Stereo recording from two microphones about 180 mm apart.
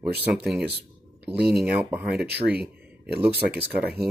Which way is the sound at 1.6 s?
5° right (ahead or behind).